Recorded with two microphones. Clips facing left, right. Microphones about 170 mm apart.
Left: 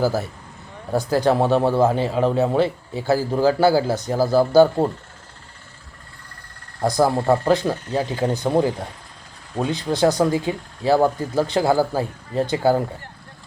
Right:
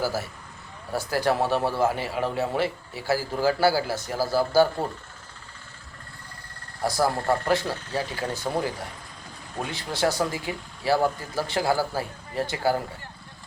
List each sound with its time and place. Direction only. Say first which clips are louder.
0.0 s speech: left 7 dB; 20° left (ahead or behind)
6.9 s speech: left 6 dB; 20° left (ahead or behind)